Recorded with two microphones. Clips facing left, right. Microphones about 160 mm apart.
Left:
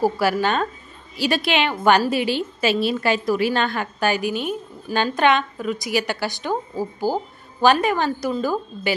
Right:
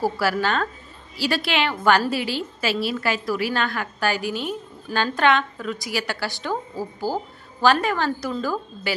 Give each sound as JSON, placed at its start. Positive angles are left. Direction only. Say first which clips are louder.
{"t": 0.0, "sound": "a woman's voice", "louder": "left 3 dB", "side_deg": 20}